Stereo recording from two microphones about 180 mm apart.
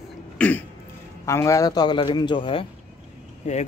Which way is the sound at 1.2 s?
15° left (ahead or behind).